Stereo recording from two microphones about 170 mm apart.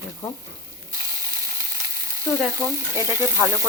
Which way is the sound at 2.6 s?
15° left (ahead or behind).